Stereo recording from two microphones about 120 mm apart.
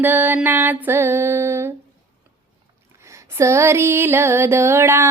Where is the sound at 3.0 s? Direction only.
25° right (ahead or behind).